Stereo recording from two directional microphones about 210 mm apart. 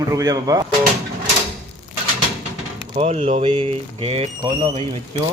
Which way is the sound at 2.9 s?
30° right (ahead or behind).